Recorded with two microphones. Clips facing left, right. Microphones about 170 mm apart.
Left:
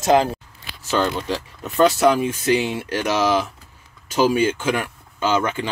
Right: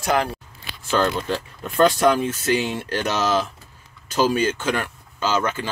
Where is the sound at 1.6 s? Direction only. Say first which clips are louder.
Left 1 dB; 5° left (ahead or behind).